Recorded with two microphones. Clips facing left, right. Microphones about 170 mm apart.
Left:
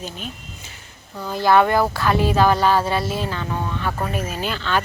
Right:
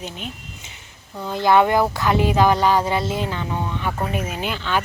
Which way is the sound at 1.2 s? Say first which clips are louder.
Even; 20° right (ahead or behind).